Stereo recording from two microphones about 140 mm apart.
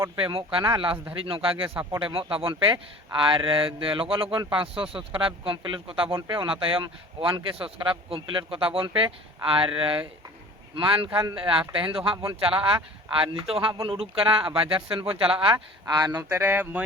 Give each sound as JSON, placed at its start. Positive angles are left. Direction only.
{"t": 0.2, "sound": "speech", "side_deg": -40}
{"t": 15.5, "sound": "speech", "side_deg": -30}
{"t": 16.3, "sound": "speech", "side_deg": -15}